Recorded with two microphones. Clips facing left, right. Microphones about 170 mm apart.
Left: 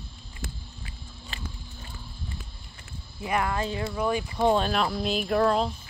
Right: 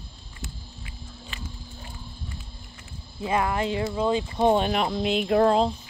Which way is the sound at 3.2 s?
20° right (ahead or behind).